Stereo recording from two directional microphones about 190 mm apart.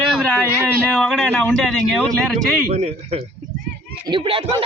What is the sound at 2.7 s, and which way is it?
Speech, 35° right (ahead or behind).